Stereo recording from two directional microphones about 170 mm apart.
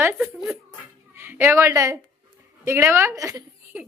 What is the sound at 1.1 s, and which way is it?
A woman's voice, 15° right (ahead or behind).